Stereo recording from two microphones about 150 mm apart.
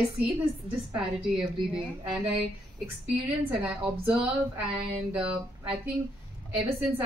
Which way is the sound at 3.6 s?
10° right (ahead or behind).